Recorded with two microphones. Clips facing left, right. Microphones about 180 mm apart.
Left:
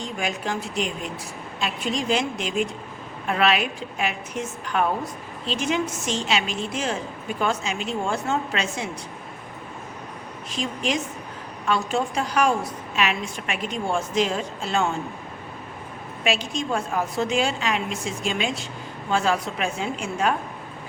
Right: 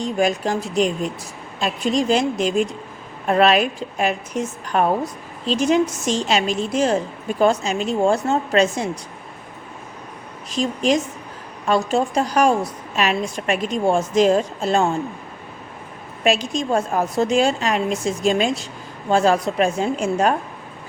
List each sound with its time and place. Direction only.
0.0 s a woman's voice: 40° right (ahead or behind)
10.5 s a woman's voice: 40° right (ahead or behind)
16.2 s a woman's voice: 40° right (ahead or behind)